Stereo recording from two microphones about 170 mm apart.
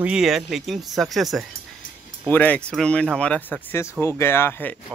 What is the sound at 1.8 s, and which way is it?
Music, 55° left (ahead or behind).